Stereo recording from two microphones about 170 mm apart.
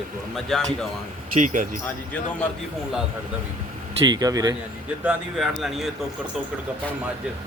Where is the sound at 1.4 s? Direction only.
50° right (ahead or behind).